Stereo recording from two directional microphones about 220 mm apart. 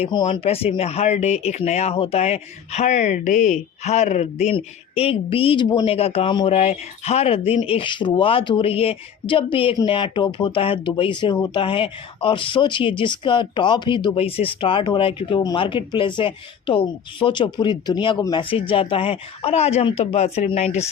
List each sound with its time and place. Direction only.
0.0 s speech: 25° left (ahead or behind)